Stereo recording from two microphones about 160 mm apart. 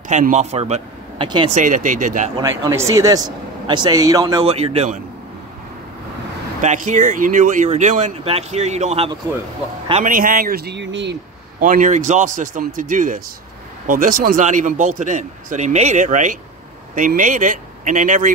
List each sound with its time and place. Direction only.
0.1 s a man's voice: 50° right (ahead or behind)
1.2 s speech: 30° right (ahead or behind)
1.5 s speech: 55° right (ahead or behind)
2.3 s speech: 20° right (ahead or behind)
4.5 s speech: 40° right (ahead or behind)
6.6 s speech: 50° right (ahead or behind)
10.0 s speech: 60° right (ahead or behind); by 11.1 s 90° right
11.6 s speech: 55° right (ahead or behind)